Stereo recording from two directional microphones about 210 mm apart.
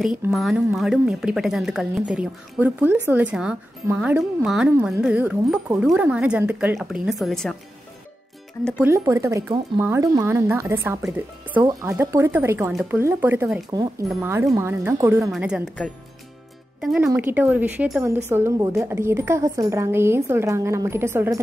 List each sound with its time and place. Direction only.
0.0 s speech: centre (ahead or behind)
8.6 s speech: 5° right (ahead or behind)
13.7 s speech: 20° right (ahead or behind)
15.3 s speech: centre (ahead or behind)